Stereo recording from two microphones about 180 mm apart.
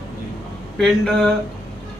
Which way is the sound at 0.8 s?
Centre (ahead or behind).